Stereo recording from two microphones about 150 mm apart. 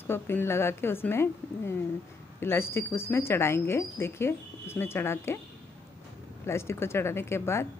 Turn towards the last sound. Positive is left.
turn(degrees=15)  # may be behind; listen again after turning